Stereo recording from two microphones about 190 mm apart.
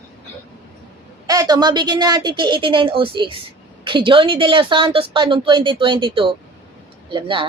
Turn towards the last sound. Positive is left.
turn(degrees=-25)  # may be behind; listen again after turning